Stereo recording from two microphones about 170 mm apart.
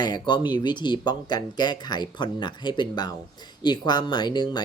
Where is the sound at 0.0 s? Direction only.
25° left (ahead or behind).